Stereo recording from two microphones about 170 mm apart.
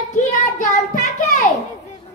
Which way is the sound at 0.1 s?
45° left (ahead or behind).